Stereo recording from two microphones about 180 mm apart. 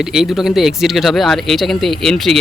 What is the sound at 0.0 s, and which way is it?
Speech, 5° right (ahead or behind).